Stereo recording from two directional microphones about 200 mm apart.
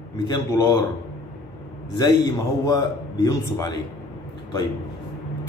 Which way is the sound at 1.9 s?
20° left (ahead or behind).